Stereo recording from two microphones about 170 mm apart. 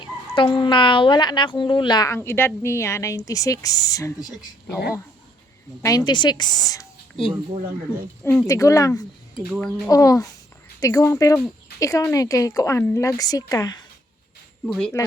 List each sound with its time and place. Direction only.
0.0 s speech: 30° left (ahead or behind)
5.8 s a woman's voice: 25° left (ahead or behind)
14.7 s speech: 5° left (ahead or behind)